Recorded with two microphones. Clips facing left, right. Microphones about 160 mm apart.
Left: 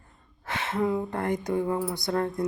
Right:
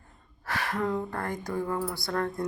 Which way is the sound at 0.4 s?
20° left (ahead or behind).